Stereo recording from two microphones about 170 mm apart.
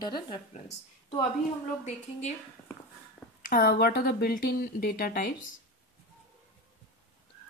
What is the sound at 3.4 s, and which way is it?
Speech, 60° left (ahead or behind).